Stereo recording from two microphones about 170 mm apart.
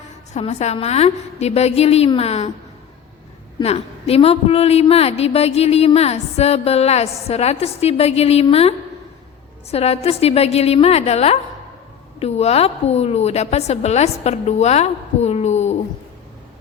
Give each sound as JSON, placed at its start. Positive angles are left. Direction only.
{"t": 0.3, "sound": "a woman's voice", "side_deg": 40}
{"t": 3.6, "sound": "a woman's voice", "side_deg": 35}